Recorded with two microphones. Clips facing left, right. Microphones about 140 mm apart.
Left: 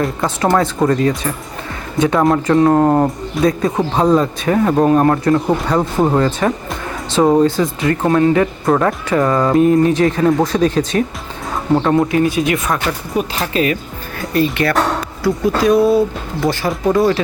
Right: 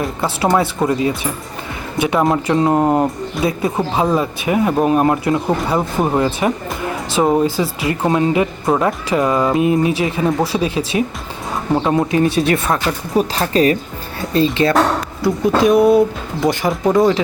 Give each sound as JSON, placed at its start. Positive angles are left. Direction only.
{"t": 0.4, "sound": "speech", "side_deg": -10}
{"t": 2.3, "sound": "speech", "side_deg": -15}
{"t": 12.1, "sound": "speech", "side_deg": -30}
{"t": 14.2, "sound": "speech", "side_deg": -25}